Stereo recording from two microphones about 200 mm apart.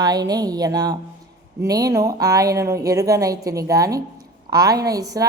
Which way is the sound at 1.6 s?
20° right (ahead or behind).